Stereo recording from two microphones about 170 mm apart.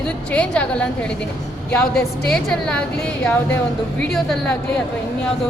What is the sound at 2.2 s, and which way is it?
A woman's voice, 5° left (ahead or behind).